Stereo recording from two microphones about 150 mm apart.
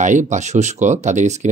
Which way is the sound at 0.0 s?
55° right (ahead or behind).